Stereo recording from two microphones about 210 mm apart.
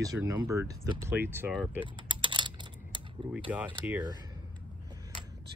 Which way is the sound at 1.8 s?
25° right (ahead or behind).